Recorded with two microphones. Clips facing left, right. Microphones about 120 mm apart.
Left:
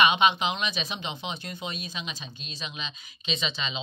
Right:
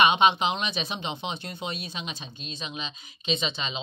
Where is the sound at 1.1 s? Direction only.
25° right (ahead or behind).